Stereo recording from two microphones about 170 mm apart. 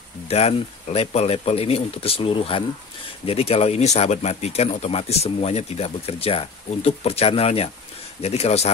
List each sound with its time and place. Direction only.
0.3 s speech: 35° left (ahead or behind)